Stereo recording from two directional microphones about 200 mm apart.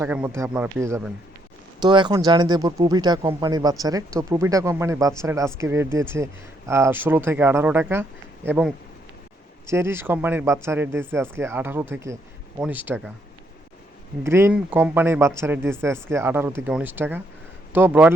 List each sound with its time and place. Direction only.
0.0 s speech: 10° right (ahead or behind)
14.3 s speech: 15° right (ahead or behind)